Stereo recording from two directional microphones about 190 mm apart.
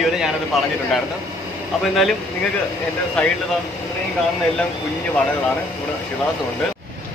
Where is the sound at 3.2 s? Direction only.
5° left (ahead or behind).